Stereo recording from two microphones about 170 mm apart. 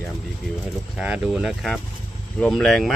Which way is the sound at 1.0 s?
5° right (ahead or behind).